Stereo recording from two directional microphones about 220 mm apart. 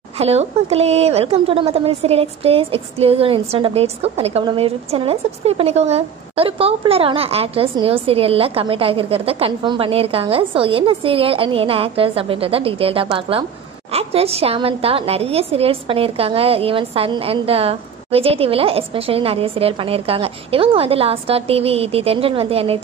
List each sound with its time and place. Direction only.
0.2 s a woman's voice: 30° right (ahead or behind)